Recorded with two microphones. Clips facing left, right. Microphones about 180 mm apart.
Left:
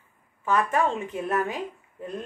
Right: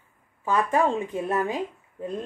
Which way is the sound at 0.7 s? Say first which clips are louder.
Right 2 dB; 20° right (ahead or behind).